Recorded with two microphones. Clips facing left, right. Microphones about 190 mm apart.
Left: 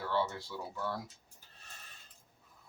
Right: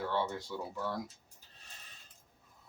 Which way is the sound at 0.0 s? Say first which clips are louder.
Even; 15° right (ahead or behind).